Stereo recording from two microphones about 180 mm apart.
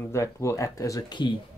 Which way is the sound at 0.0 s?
15° left (ahead or behind).